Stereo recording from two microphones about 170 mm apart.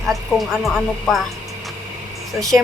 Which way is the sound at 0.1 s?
Centre (ahead or behind).